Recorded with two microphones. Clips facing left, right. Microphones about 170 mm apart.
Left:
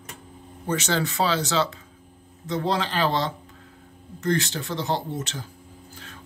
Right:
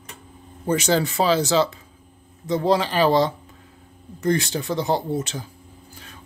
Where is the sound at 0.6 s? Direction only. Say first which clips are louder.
Right 5 dB; 10° right (ahead or behind).